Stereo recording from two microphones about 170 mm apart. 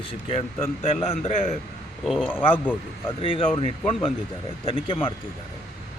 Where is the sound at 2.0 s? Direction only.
Centre (ahead or behind).